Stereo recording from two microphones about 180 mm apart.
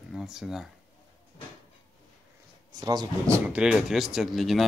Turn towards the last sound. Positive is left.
turn(degrees=0)  # may be behind; listen again after turning